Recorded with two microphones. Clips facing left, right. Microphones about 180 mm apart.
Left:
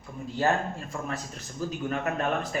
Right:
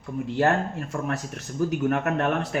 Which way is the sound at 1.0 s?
65° right (ahead or behind).